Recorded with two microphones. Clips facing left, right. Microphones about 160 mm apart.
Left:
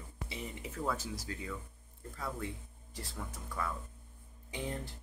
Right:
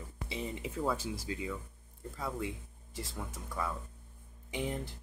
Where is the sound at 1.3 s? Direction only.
20° right (ahead or behind).